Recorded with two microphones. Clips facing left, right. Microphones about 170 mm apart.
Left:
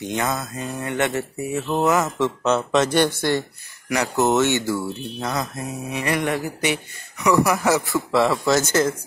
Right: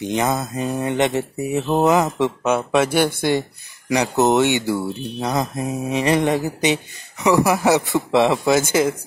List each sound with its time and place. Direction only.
0.0 s mantra: 20° right (ahead or behind)
3.9 s speech: 20° right (ahead or behind)